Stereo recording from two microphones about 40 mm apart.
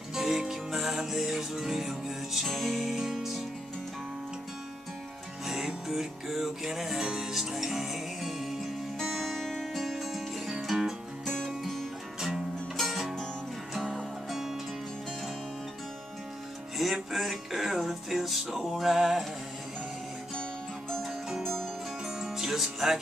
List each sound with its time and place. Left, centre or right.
0.1 s music: centre
5.4 s music: centre
9.8 s music: centre
11.2 s music: centre
12.2 s music: centre
12.7 s music: centre
13.9 s music: centre
16.7 s music: centre
21.4 s music: centre
22.0 s music: centre